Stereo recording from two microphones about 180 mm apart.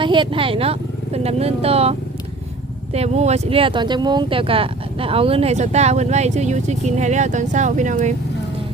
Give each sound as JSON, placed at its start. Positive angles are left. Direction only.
{"t": 0.0, "sound": "speech", "side_deg": -25}